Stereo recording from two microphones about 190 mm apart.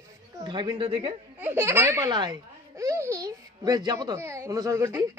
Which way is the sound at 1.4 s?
10° right (ahead or behind).